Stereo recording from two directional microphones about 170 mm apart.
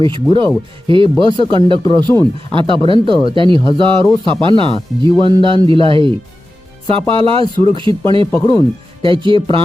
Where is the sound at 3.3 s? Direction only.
30° right (ahead or behind).